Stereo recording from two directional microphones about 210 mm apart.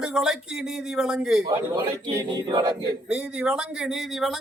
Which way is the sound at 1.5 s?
20° right (ahead or behind).